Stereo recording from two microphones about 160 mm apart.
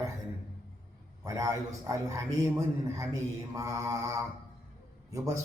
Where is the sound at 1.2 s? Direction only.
20° right (ahead or behind).